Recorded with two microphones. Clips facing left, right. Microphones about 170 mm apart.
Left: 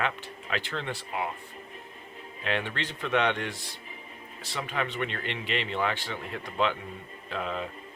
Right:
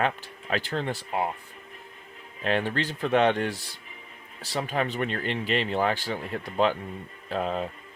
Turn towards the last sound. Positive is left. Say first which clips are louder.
# right 5 dB
turn(degrees=-40)  # may be behind; listen again after turning